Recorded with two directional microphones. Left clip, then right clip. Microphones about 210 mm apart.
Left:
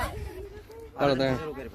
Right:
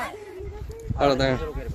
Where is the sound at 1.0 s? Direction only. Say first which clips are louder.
Right 4 dB; 10° right (ahead or behind).